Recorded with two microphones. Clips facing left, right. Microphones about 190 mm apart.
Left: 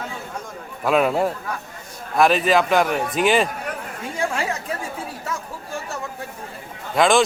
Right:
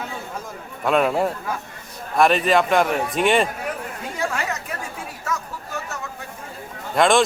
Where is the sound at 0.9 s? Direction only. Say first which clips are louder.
Left 1 dB; centre (ahead or behind).